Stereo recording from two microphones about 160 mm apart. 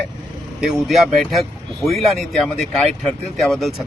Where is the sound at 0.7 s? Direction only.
Centre (ahead or behind).